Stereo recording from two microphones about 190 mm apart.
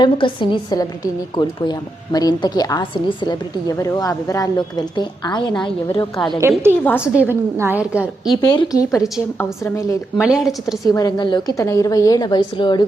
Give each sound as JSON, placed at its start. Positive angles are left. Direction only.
{"t": 0.0, "sound": "a woman's voice", "side_deg": 25}
{"t": 6.4, "sound": "a woman's voice", "side_deg": -15}
{"t": 8.4, "sound": "a woman's voice", "side_deg": 20}
{"t": 10.2, "sound": "a woman's voice", "side_deg": -5}
{"t": 10.8, "sound": "a woman's voice", "side_deg": 20}